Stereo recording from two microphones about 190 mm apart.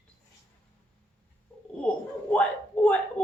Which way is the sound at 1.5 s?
10° left (ahead or behind).